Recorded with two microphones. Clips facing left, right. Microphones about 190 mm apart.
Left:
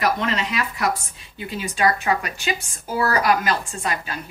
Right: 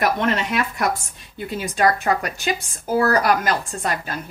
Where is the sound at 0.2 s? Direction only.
50° right (ahead or behind).